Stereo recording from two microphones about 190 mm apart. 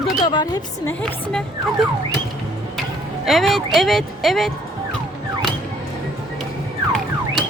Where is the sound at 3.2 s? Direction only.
Centre (ahead or behind).